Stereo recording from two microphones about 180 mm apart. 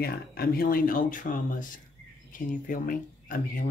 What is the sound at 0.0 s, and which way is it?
Speech, 60° left (ahead or behind).